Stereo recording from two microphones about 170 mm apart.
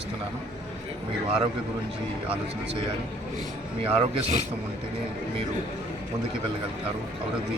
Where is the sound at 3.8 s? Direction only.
35° right (ahead or behind).